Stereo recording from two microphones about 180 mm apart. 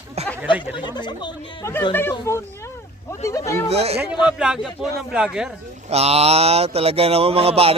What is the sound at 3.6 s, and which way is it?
Speech, 35° right (ahead or behind).